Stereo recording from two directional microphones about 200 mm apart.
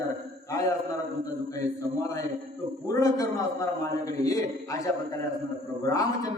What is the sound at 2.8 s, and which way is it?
Speech, 15° left (ahead or behind).